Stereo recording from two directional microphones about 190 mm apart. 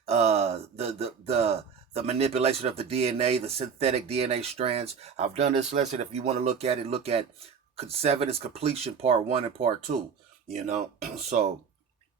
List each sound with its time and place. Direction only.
0.0 s speech: 35° right (ahead or behind)